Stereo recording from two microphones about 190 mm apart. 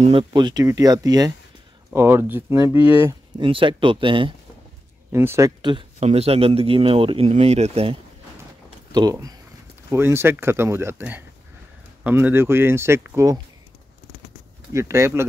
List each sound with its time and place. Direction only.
0.0 s speech: 30° right (ahead or behind); by 3.2 s 10° right (ahead or behind)
3.3 s speech: 25° right (ahead or behind)
5.1 s speech: 15° right (ahead or behind); by 8.0 s 30° right (ahead or behind)
8.9 s speech: 20° right (ahead or behind)
14.7 s speech: 15° right (ahead or behind)